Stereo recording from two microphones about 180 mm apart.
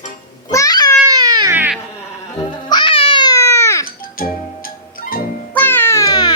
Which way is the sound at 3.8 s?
50° left (ahead or behind).